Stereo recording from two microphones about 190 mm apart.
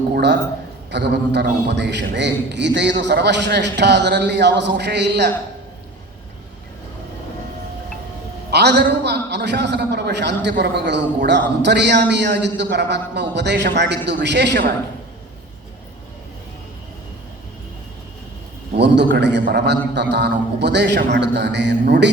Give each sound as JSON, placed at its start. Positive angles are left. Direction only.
{"t": 0.1, "sound": "a man's voice", "side_deg": -60}
{"t": 8.4, "sound": "a man's voice", "side_deg": -60}
{"t": 19.1, "sound": "a man's voice", "side_deg": -65}